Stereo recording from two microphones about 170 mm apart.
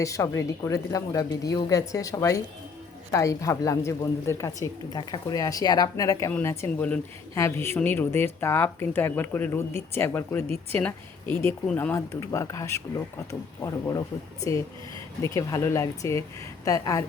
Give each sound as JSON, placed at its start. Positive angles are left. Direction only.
{"t": 0.0, "sound": "a woman's voice", "side_deg": 20}
{"t": 15.2, "sound": "a woman's voice", "side_deg": 20}